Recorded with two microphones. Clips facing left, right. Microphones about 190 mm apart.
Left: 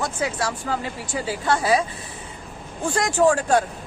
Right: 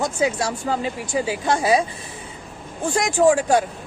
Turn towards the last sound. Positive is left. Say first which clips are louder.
# right 2 dB
turn(degrees=-15)  # may be behind; listen again after turning